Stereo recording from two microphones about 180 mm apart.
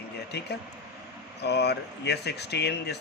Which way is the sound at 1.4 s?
70° left (ahead or behind).